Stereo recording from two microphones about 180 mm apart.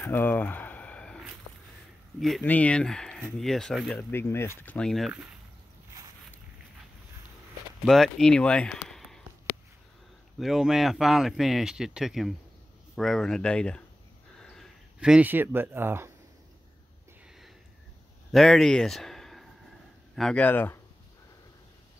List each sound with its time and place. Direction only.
0.0 s a sound: 10° left (ahead or behind)
2.1 s speech: centre (ahead or behind)
4.1 s speech: 15° left (ahead or behind); by 5.3 s 5° right (ahead or behind)
7.8 s speech: centre (ahead or behind)
10.4 s speech: centre (ahead or behind)
18.3 s speech: centre (ahead or behind)